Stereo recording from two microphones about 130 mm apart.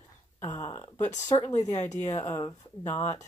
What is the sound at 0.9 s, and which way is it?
Speech, 65° left (ahead or behind).